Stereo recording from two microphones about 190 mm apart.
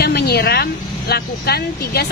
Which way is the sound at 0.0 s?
60° left (ahead or behind).